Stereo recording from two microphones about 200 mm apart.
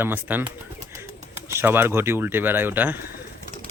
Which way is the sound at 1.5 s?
10° right (ahead or behind).